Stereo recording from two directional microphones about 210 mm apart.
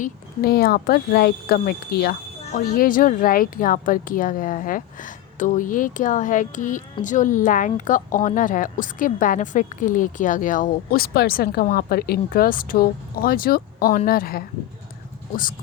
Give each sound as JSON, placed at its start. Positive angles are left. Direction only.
{"t": 0.0, "sound": "speech", "side_deg": 45}